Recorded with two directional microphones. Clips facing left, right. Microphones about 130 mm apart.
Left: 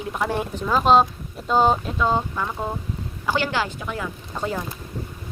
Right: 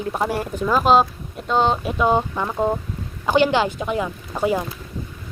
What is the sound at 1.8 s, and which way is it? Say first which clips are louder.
A woman's voice: right 3 dB; 15° right (ahead or behind).